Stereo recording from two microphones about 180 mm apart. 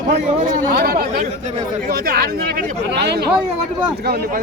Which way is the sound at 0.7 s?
60° right (ahead or behind).